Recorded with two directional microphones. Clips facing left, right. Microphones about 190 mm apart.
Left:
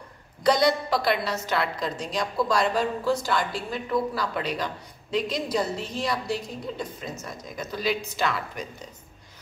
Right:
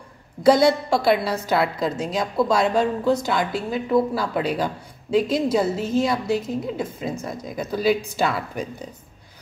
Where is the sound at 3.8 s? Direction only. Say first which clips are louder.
Right 6 dB; 25° right (ahead or behind).